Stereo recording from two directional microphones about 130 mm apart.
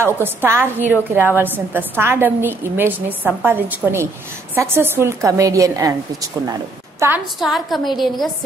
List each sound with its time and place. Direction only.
0.0 s a woman's voice: 15° right (ahead or behind)
7.0 s a woman's voice: 20° right (ahead or behind)
7.3 s a woman's voice: centre (ahead or behind)